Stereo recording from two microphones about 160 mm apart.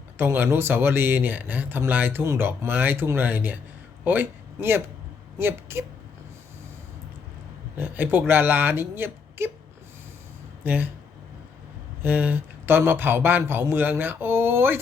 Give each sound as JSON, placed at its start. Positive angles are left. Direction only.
{"t": 0.2, "sound": "speech", "side_deg": -15}
{"t": 7.8, "sound": "speech", "side_deg": -10}
{"t": 10.6, "sound": "speech", "side_deg": -10}
{"t": 12.0, "sound": "speech", "side_deg": -10}